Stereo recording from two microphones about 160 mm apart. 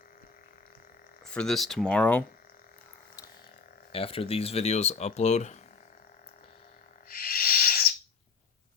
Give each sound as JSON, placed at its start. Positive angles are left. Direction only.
{"t": 1.3, "sound": "speech", "side_deg": 5}
{"t": 3.9, "sound": "speech", "side_deg": 35}
{"t": 7.1, "sound": "owl", "side_deg": 65}